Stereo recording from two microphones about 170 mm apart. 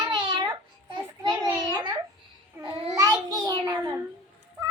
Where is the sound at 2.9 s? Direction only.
20° right (ahead or behind).